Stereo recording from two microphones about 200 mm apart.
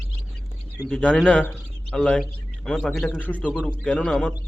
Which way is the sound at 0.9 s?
5° left (ahead or behind).